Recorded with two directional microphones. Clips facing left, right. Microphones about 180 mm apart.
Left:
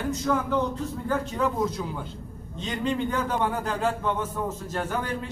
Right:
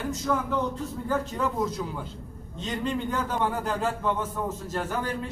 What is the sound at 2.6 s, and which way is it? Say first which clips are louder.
A man's voice: left 2 dB; centre (ahead or behind).